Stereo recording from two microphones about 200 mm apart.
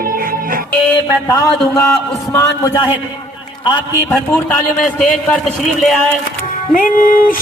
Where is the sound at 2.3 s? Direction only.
15° left (ahead or behind).